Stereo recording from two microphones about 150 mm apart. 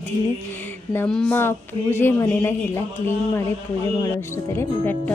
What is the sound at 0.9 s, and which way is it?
Speech, 5° left (ahead or behind).